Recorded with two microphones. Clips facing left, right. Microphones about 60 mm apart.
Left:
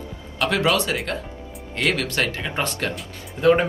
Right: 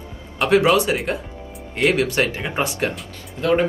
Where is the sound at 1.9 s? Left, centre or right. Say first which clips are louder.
Right 4 dB; centre.